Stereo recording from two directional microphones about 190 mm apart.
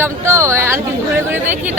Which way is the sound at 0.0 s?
15° right (ahead or behind).